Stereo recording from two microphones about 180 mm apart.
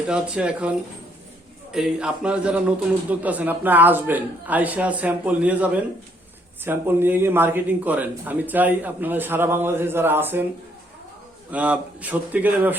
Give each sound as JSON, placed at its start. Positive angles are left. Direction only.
{"t": 0.1, "sound": "a man's voice", "side_deg": -5}
{"t": 1.7, "sound": "a man's voice", "side_deg": -5}
{"t": 11.5, "sound": "a man's voice", "side_deg": -10}